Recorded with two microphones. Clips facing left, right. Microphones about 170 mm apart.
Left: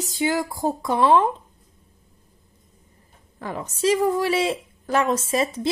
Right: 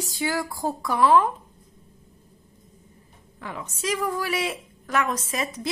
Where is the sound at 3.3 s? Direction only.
40° left (ahead or behind).